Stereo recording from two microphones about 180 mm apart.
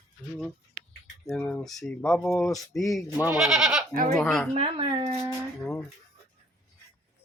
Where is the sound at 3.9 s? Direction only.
50° right (ahead or behind).